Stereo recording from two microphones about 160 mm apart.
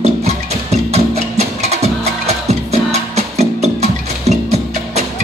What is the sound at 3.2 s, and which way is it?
Music, 45° right (ahead or behind).